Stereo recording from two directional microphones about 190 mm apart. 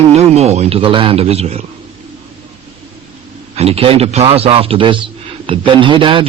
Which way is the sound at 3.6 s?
30° right (ahead or behind).